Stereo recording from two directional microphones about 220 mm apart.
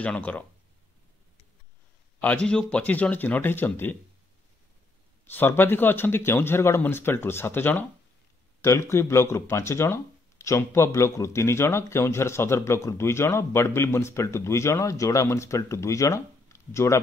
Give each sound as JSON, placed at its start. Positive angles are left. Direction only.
{"t": 0.0, "sound": "speech", "side_deg": 5}
{"t": 2.2, "sound": "speech", "side_deg": 5}
{"t": 5.2, "sound": "speech", "side_deg": 10}